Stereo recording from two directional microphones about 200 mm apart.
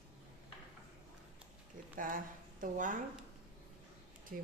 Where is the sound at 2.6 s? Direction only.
40° right (ahead or behind).